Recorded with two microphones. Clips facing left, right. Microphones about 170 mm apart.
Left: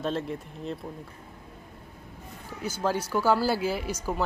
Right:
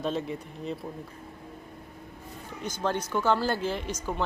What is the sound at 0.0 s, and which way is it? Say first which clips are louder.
Speech: even; centre (ahead or behind).